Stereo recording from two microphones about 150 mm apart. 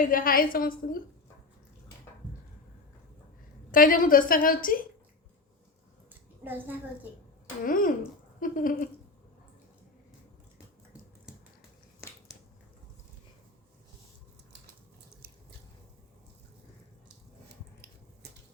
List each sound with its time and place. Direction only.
0.0 s a woman's voice: 70° left (ahead or behind)
3.7 s a woman's voice: 65° left (ahead or behind)
6.4 s a woman's voice: 15° right (ahead or behind)
7.6 s a woman's voice: 65° left (ahead or behind)